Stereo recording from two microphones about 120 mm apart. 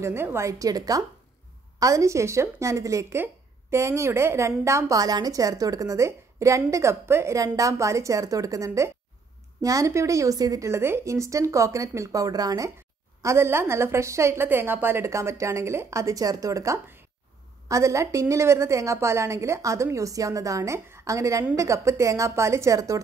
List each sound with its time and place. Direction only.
0.0 s a woman's voice: 20° right (ahead or behind)